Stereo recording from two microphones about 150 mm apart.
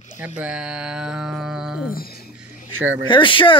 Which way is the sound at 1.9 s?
85° left.